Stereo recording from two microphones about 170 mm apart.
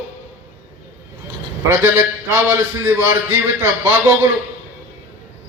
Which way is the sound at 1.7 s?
15° right (ahead or behind).